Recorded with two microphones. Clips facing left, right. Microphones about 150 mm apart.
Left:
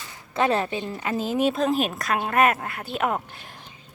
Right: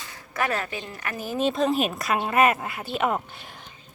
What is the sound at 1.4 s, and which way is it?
A woman's voice, 5° left (ahead or behind).